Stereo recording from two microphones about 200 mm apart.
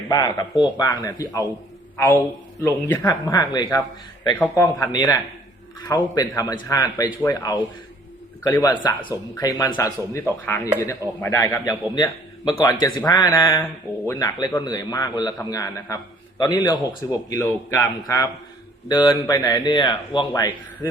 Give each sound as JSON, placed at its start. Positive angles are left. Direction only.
{"t": 0.1, "sound": "a man's voice", "side_deg": 20}
{"t": 8.8, "sound": "a man's voice", "side_deg": 25}